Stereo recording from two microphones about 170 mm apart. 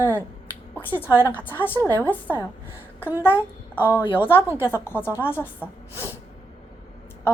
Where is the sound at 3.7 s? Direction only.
10° right (ahead or behind).